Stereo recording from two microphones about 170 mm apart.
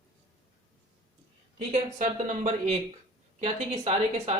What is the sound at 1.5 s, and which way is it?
Speech, 45° right (ahead or behind).